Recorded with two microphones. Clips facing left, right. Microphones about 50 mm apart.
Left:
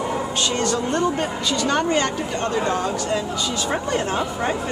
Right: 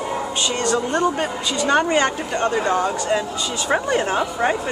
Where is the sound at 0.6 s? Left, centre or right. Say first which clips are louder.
Right 2 dB; centre.